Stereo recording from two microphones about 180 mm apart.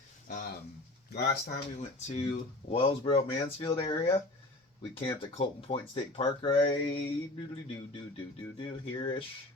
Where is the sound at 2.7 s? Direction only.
30° left (ahead or behind).